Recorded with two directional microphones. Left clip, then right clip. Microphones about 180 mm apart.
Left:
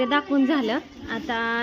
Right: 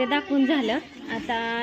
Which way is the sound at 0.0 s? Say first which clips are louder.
Left 1 dB; 10° left (ahead or behind).